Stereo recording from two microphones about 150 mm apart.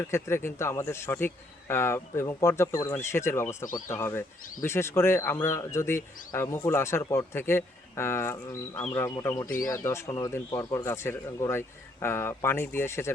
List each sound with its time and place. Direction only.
0.0 s speech: 15° left (ahead or behind)